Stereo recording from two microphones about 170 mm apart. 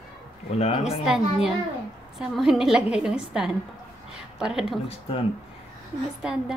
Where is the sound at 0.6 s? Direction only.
40° left (ahead or behind).